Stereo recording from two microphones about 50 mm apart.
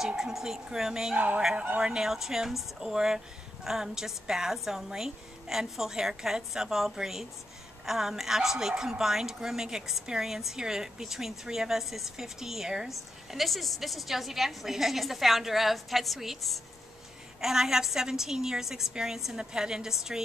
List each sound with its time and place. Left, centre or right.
0.2 s a woman's voice: centre
1.1 s yodeling: right
1.8 s a woman's voice: centre
17.4 s a woman's voice: centre